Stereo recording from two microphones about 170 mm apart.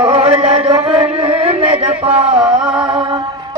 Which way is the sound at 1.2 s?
35° right (ahead or behind).